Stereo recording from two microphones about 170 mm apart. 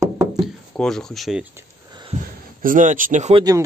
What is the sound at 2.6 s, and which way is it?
Speech, 50° right (ahead or behind).